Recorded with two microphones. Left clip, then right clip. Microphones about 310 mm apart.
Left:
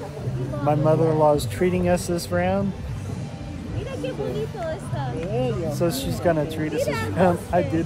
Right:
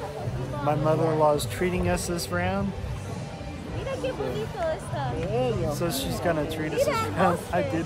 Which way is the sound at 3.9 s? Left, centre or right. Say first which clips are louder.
Right 1 dB; centre.